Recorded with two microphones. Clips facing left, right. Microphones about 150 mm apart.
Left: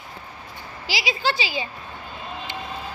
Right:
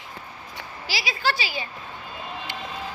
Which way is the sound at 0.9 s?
90° left.